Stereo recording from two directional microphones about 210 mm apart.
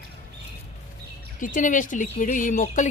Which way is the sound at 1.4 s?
40° left (ahead or behind).